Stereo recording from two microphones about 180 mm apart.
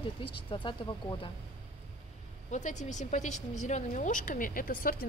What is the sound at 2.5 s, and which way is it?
A woman's voice, 40° left (ahead or behind).